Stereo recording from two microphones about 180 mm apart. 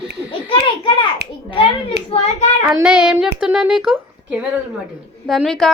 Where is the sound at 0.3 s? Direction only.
25° left (ahead or behind).